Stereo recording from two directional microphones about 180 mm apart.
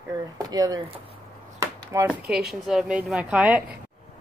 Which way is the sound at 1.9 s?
15° right (ahead or behind).